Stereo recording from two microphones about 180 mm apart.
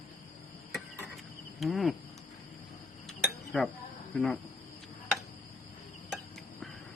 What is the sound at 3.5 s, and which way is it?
Speech, 5° left (ahead or behind).